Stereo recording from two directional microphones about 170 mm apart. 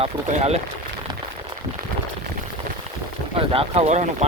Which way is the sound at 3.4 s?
35° right (ahead or behind).